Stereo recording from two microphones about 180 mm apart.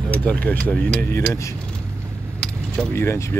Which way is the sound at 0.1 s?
10° left (ahead or behind).